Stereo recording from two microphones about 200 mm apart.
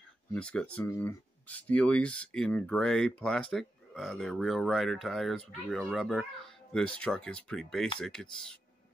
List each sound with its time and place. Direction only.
0.3 s speech: 5° left (ahead or behind)